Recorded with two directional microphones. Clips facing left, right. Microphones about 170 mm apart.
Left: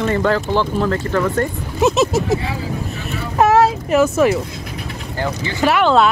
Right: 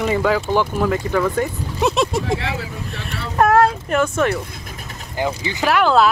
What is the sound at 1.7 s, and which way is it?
Speech, centre (ahead or behind).